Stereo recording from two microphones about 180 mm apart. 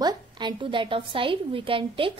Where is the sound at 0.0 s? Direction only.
25° right (ahead or behind).